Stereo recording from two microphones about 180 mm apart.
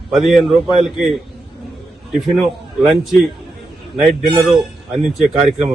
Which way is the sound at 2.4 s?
Centre (ahead or behind).